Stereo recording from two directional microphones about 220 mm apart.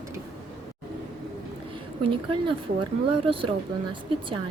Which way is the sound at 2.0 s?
25° right (ahead or behind).